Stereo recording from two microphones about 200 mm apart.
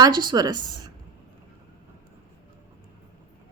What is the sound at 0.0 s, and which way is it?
Speech, 20° right (ahead or behind).